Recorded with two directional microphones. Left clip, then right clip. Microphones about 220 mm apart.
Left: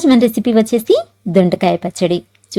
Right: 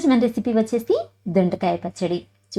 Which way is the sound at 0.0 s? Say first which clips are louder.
Left 7 dB; 30° left (ahead or behind).